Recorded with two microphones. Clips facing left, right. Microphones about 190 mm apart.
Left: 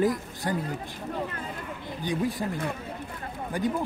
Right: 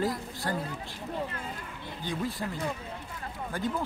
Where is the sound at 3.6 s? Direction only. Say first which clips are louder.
Left 5 dB; 15° left (ahead or behind).